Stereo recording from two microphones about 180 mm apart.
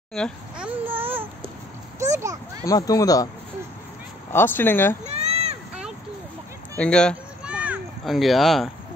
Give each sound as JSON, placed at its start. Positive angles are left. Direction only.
{"t": 0.1, "sound": "babbling", "side_deg": 5}
{"t": 0.8, "sound": "babbling", "side_deg": -10}
{"t": 2.1, "sound": "a child's voice", "side_deg": -15}
{"t": 2.6, "sound": "speech", "side_deg": 20}
{"t": 4.3, "sound": "speech", "side_deg": 10}
{"t": 5.0, "sound": "a sound", "side_deg": -35}
{"t": 6.8, "sound": "speech", "side_deg": 5}
{"t": 7.4, "sound": "a sound", "side_deg": -5}